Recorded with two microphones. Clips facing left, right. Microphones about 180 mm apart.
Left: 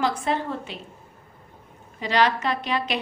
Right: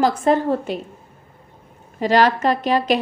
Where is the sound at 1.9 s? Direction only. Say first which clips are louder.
Right 6 dB; 45° right (ahead or behind).